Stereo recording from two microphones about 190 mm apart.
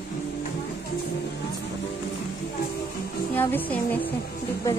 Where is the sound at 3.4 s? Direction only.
10° left (ahead or behind).